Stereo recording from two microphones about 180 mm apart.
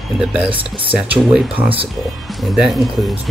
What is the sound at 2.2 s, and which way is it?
Speech, centre (ahead or behind).